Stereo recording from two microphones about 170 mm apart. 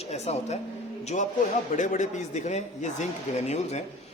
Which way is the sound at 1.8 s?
45° left (ahead or behind).